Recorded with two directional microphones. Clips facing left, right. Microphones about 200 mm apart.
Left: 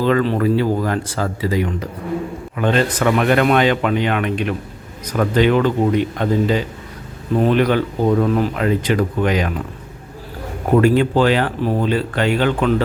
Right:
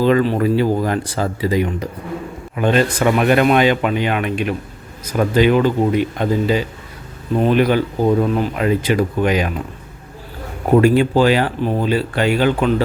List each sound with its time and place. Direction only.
0.0 s speech: 10° right (ahead or behind)
8.5 s speech: 10° right (ahead or behind)
10.8 s speech: 10° right (ahead or behind)